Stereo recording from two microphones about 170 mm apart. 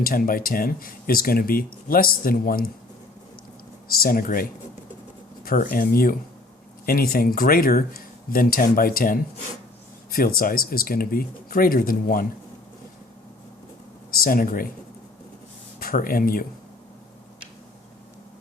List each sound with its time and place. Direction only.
0.0 s speech: 60° left (ahead or behind)
3.8 s speech: 60° left (ahead or behind)
5.5 s speech: 55° left (ahead or behind)
14.1 s speech: 55° left (ahead or behind)
15.8 s speech: 60° left (ahead or behind)